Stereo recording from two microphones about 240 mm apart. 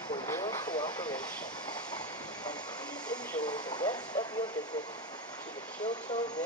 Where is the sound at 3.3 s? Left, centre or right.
Centre.